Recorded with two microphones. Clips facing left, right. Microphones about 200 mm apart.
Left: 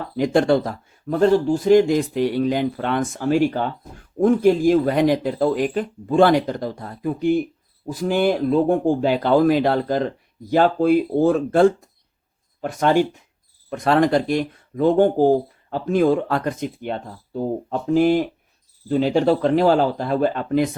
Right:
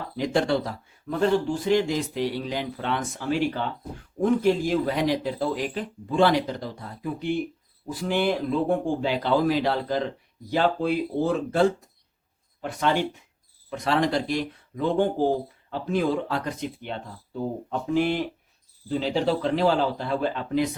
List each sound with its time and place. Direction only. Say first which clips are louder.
0.2 s speech: left 6 dB; 50° left (ahead or behind)
18.9 s speech: left 7 dB; 55° left (ahead or behind)